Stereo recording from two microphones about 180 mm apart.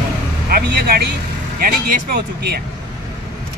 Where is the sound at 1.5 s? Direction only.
55° right (ahead or behind).